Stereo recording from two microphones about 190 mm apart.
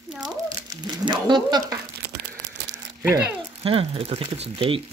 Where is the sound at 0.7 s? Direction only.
25° right (ahead or behind).